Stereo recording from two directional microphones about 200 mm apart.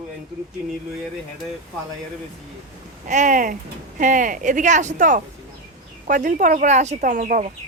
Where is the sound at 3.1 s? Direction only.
40° right (ahead or behind).